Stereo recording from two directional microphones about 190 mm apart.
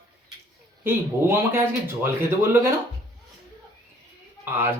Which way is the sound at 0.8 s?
15° right (ahead or behind).